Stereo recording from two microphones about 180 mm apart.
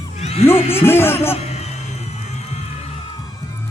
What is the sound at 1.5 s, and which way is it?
Music, 35° left (ahead or behind).